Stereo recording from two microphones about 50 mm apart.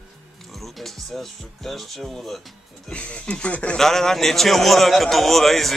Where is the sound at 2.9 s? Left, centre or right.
Left.